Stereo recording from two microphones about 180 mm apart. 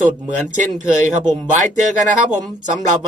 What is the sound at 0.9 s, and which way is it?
Speech, 45° right (ahead or behind).